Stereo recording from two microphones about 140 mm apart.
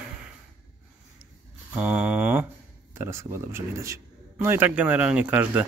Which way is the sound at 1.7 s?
10° right (ahead or behind).